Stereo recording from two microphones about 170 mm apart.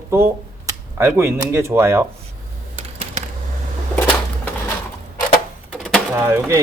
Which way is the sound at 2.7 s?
35° right (ahead or behind).